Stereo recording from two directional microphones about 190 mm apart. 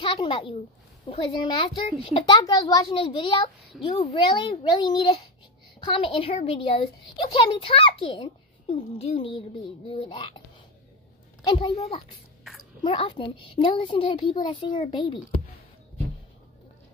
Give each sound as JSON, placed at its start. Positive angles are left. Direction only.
{"t": 0.0, "sound": "a woman's voice", "side_deg": 25}
{"t": 11.4, "sound": "speech", "side_deg": 25}